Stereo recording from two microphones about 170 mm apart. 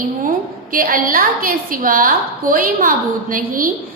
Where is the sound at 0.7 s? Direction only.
55° right (ahead or behind).